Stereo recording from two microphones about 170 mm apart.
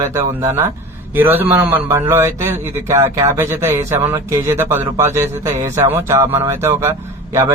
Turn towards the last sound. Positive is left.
turn(degrees=-15)  # may be behind; listen again after turning